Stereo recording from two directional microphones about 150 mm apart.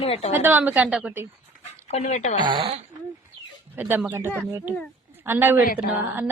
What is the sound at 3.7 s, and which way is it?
A woman's voice, 15° right (ahead or behind).